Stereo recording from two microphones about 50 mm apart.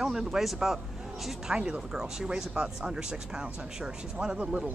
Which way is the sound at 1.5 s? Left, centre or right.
Centre.